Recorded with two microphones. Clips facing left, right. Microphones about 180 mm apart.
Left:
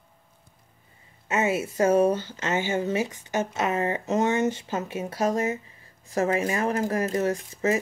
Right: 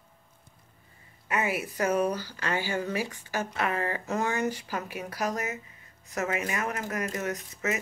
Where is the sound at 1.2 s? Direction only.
25° left (ahead or behind).